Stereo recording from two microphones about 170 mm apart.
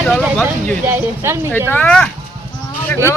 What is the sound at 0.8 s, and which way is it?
Speech, 10° right (ahead or behind).